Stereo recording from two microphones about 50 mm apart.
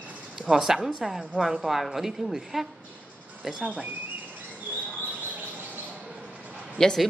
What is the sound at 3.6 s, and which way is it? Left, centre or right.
Speech, centre.